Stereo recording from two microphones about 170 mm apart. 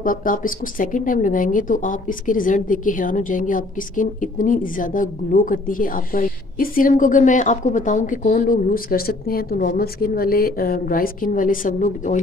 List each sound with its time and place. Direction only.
0.0 s speech: 55° left (ahead or behind)